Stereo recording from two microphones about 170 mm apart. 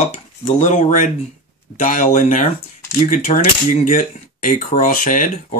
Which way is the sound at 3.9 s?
55° left (ahead or behind).